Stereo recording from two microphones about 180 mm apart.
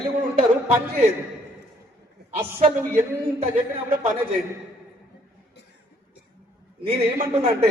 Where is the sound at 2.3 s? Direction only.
35° right (ahead or behind).